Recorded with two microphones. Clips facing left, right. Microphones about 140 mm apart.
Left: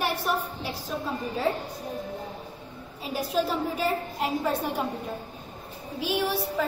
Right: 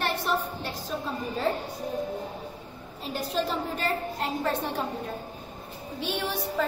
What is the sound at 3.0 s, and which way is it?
A woman's voice, 5° left (ahead or behind).